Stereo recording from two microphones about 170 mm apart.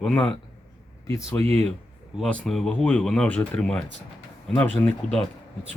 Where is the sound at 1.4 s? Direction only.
40° right (ahead or behind).